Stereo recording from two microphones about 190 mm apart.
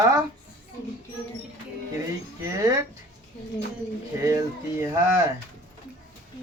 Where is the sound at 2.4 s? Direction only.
20° right (ahead or behind).